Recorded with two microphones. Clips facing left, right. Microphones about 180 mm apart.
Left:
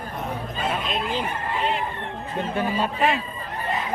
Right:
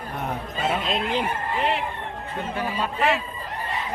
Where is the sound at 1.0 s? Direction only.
65° right (ahead or behind).